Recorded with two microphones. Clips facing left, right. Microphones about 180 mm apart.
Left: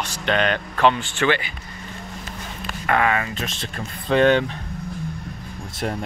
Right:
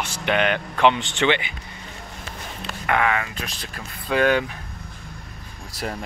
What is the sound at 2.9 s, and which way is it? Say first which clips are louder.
Speech: left 2 dB; 20° left (ahead or behind).